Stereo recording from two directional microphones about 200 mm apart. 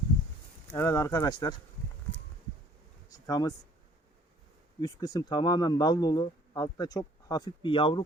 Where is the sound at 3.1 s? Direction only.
20° left (ahead or behind).